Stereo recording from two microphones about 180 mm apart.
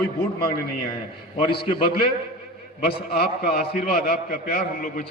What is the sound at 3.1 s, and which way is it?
A man's voice, 60° left (ahead or behind).